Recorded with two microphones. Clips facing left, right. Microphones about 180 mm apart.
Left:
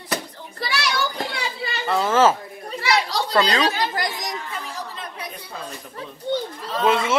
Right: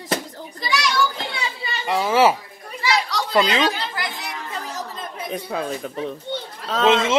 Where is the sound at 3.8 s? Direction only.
40° left (ahead or behind).